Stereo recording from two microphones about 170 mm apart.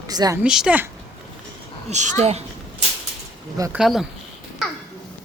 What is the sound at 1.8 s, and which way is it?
Speech, 45° right (ahead or behind).